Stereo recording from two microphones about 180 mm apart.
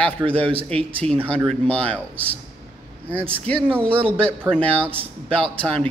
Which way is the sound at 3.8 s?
30° right (ahead or behind).